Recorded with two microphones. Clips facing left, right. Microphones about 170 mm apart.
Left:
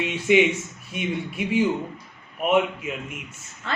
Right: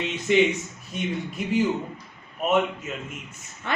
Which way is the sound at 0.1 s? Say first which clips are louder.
Left 1 dB; 10° left (ahead or behind).